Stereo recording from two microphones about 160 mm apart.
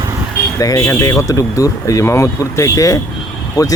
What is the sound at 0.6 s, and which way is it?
Speech, 20° left (ahead or behind).